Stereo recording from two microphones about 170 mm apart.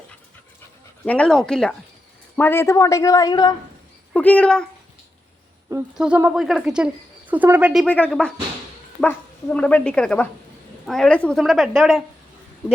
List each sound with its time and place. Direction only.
1.0 s a woman's voice: 5° left (ahead or behind)
4.1 s speech: 10° left (ahead or behind)
5.6 s speech: 10° right (ahead or behind)
7.9 s a woman's voice: 10° left (ahead or behind)